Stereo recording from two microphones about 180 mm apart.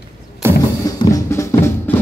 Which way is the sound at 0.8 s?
20° left (ahead or behind).